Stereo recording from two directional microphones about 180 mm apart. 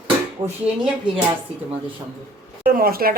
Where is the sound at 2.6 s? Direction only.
55° right (ahead or behind).